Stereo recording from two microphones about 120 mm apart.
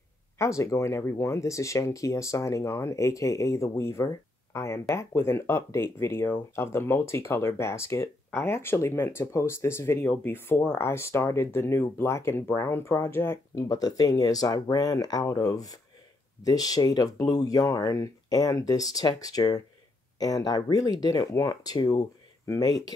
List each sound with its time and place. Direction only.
0.4 s speech: 25° left (ahead or behind)
13.7 s speech: 35° left (ahead or behind)